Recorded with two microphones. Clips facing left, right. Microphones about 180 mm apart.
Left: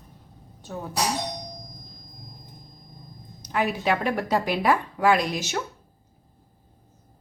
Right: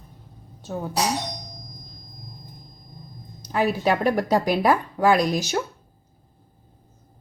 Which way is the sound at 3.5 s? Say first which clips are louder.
Right 3 dB; 35° right (ahead or behind).